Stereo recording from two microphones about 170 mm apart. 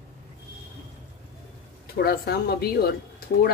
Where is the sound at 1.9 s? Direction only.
70° left (ahead or behind).